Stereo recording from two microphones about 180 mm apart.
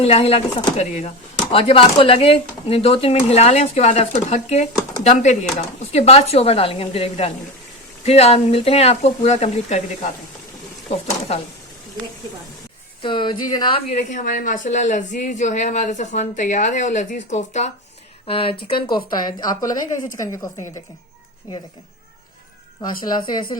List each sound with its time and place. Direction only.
0.0 s speech: 35° left (ahead or behind)
13.0 s a woman's voice: 25° left (ahead or behind)
13.9 s a woman's voice: 45° left (ahead or behind); by 20.5 s 20° left (ahead or behind)
23.1 s a woman's voice: 25° left (ahead or behind)